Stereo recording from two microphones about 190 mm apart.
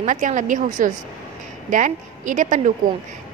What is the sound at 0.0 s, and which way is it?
A woman's voice, 40° right (ahead or behind).